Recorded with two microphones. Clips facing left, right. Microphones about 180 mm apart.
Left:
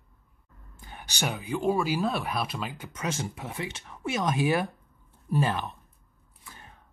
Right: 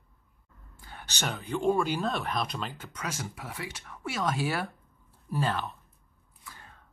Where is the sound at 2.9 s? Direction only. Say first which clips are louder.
Left 5 dB; 25° left (ahead or behind).